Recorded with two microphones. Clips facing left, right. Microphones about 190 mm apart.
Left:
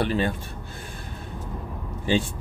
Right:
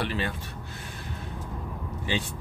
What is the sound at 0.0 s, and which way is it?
Speech, 40° left (ahead or behind).